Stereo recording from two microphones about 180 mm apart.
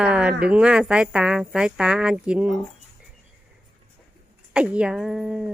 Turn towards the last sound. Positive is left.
turn(degrees=-5)  # may be behind; listen again after turning